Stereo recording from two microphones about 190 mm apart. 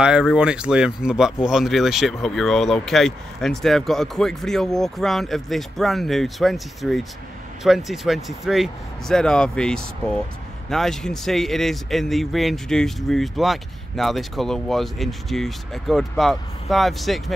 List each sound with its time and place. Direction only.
0.0 s speech: 5° right (ahead or behind)